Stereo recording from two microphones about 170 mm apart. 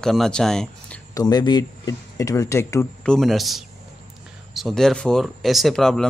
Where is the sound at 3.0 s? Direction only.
5° left (ahead or behind).